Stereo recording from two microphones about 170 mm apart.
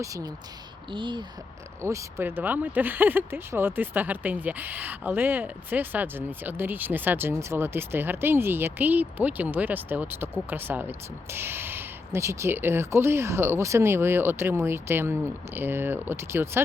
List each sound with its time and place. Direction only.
0.0 s speech: 20° right (ahead or behind)
1.8 s speech: 15° right (ahead or behind)